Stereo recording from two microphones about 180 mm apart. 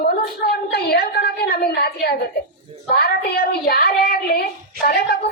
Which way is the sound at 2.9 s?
60° left (ahead or behind).